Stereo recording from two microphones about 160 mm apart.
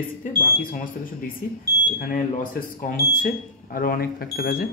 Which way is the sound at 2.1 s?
60° left (ahead or behind).